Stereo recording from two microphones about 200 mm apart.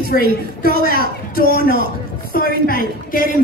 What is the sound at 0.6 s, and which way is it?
Speech, 50° right (ahead or behind).